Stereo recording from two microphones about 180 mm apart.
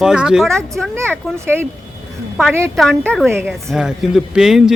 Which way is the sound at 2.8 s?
5° left (ahead or behind).